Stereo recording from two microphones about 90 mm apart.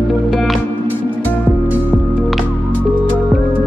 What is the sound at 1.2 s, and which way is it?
Music, 20° left (ahead or behind).